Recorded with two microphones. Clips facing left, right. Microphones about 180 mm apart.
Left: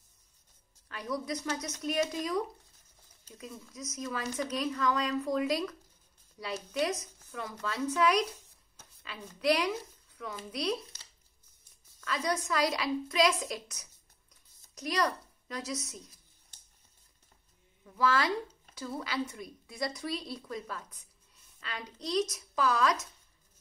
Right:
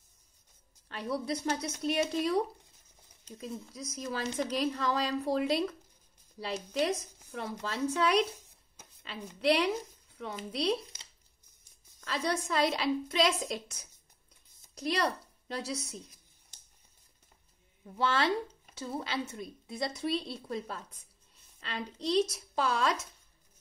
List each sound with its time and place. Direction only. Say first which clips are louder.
0.8 s a woman's voice: right 2 dB; 30° right (ahead or behind)
3.3 s a woman's voice: right 3 dB; 30° right (ahead or behind)
12.0 s a woman's voice: even; 30° right (ahead or behind)
17.8 s a woman's voice: even; 30° right (ahead or behind)